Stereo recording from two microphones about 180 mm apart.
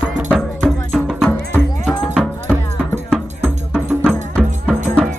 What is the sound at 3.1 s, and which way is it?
Music, 5° right (ahead or behind).